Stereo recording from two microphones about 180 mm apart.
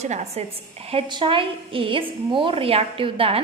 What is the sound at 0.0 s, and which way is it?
A woman's voice, 40° right (ahead or behind).